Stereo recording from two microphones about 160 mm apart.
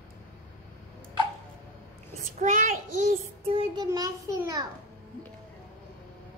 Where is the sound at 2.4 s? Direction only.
50° right (ahead or behind).